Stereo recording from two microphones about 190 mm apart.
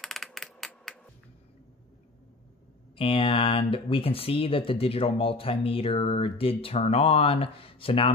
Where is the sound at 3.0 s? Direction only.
30° left (ahead or behind).